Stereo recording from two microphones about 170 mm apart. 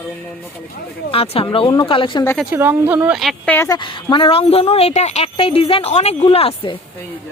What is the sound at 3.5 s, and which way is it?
Speech, 15° left (ahead or behind).